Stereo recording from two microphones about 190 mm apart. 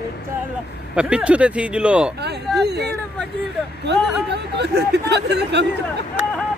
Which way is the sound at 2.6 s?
60° right (ahead or behind).